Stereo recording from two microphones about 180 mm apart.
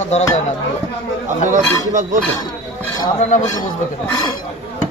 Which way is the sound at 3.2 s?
40° left (ahead or behind).